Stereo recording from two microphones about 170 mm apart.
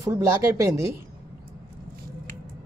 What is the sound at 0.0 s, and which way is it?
Speech, 15° right (ahead or behind).